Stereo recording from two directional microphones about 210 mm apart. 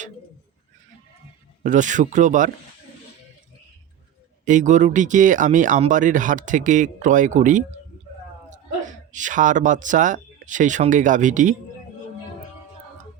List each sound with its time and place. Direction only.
1.6 s speech: 35° right (ahead or behind)
4.4 s speech: 35° right (ahead or behind)
9.1 s speech: 35° right (ahead or behind)